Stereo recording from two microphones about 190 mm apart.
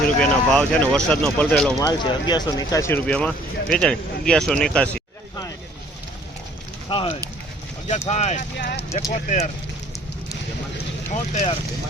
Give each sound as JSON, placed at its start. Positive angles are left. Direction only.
{"t": 0.2, "sound": "speech", "side_deg": 5}
{"t": 1.8, "sound": "speech", "side_deg": 20}
{"t": 6.9, "sound": "speech", "side_deg": 30}
{"t": 8.5, "sound": "speech", "side_deg": 65}
{"t": 9.1, "sound": "speech", "side_deg": 40}
{"t": 11.1, "sound": "speech", "side_deg": 40}